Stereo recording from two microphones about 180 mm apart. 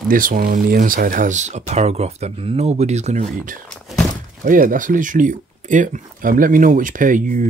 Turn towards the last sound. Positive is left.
turn(degrees=-45)  # may be behind; listen again after turning